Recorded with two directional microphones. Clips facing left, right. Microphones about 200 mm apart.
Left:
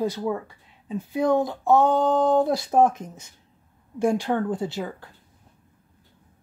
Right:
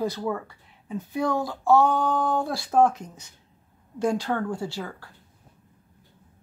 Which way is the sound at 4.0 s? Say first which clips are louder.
Left 3 dB; 20° left (ahead or behind).